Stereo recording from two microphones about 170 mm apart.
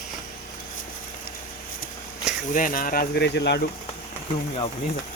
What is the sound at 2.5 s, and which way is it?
Speech, 55° left (ahead or behind).